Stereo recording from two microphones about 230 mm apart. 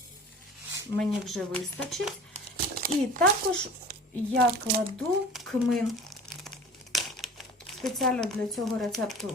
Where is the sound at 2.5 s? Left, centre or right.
Right.